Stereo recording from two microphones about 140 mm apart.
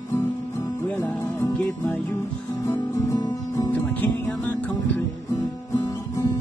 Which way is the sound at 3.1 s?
30° left (ahead or behind).